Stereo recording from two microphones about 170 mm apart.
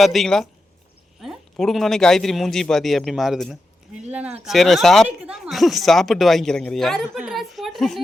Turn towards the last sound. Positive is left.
turn(degrees=0)  # may be behind; listen again after turning